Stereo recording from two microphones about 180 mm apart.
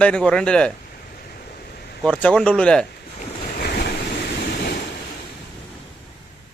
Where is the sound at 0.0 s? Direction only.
5° left (ahead or behind).